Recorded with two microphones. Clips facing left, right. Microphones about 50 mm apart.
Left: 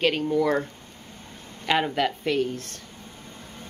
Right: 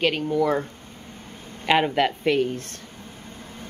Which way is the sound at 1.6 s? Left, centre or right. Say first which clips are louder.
Right 3 dB; centre.